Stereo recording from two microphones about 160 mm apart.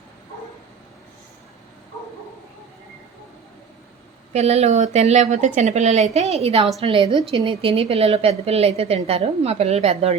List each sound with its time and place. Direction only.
4.3 s a woman's voice: 40° right (ahead or behind)